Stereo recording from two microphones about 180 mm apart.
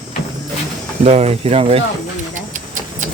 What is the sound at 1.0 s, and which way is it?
Speech, 35° right (ahead or behind).